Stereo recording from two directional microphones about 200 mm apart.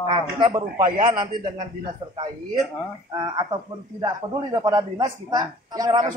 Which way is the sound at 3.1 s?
20° right (ahead or behind).